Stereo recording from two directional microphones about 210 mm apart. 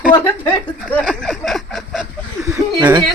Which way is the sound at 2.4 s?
15° right (ahead or behind).